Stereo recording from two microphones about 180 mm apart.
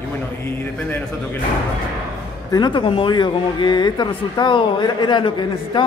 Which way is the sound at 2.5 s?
25° left (ahead or behind).